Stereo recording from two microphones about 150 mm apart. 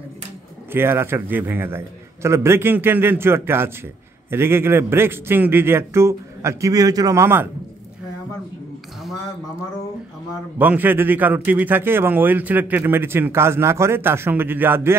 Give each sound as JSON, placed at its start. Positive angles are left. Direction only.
{"t": 0.7, "sound": "a man's voice", "side_deg": -15}
{"t": 10.6, "sound": "a man's voice", "side_deg": -10}